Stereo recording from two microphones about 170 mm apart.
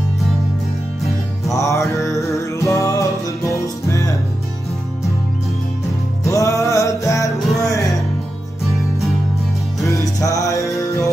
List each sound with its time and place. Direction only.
1.5 s music: 20° left (ahead or behind)
6.2 s music: 20° left (ahead or behind)
9.8 s music: 20° left (ahead or behind)